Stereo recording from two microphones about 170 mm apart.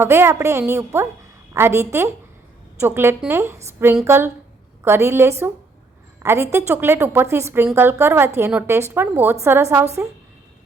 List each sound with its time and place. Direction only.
0.0 s a woman's voice: 15° right (ahead or behind)